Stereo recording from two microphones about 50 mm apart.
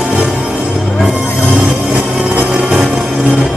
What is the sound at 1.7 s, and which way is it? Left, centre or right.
Music, centre.